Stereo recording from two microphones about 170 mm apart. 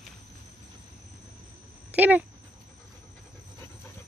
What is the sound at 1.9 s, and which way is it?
Speech, 10° right (ahead or behind).